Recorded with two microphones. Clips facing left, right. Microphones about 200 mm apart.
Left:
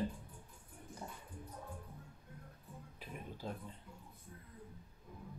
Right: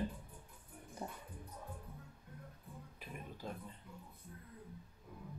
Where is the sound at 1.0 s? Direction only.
25° right (ahead or behind).